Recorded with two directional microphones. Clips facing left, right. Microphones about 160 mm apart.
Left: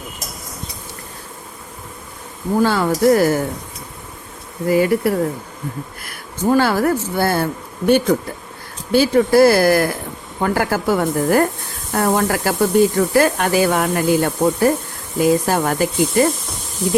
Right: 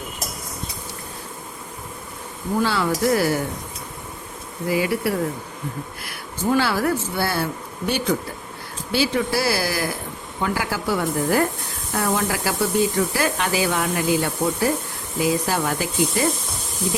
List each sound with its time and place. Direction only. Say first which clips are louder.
2.6 s speech: left 5 dB; 45° left (ahead or behind)
4.7 s speech: left 6 dB; 45° left (ahead or behind)
6.4 s speech: left 5 dB; 45° left (ahead or behind)